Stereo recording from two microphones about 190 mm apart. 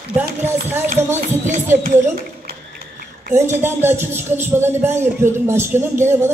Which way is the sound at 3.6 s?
10° right (ahead or behind).